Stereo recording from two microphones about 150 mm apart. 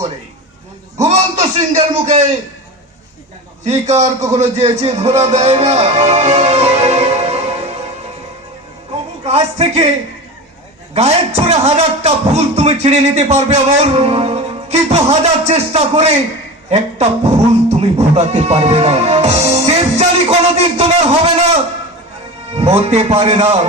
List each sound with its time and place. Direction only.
1.0 s speech: 50° right (ahead or behind)
3.7 s speech: 50° right (ahead or behind)
9.2 s speech: 45° right (ahead or behind)
10.9 s speech: 45° right (ahead or behind)
20.2 s a sound: 40° right (ahead or behind)
22.5 s speech: 45° right (ahead or behind)